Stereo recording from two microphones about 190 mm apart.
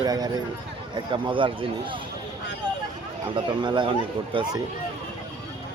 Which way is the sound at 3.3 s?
25° right (ahead or behind).